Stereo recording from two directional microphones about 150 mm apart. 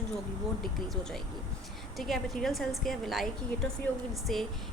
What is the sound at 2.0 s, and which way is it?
Speech, centre (ahead or behind).